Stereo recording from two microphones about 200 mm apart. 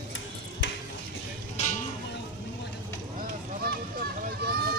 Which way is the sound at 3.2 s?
50° right (ahead or behind).